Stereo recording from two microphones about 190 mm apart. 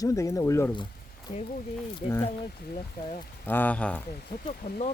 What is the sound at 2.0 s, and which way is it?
Speech, 40° left (ahead or behind).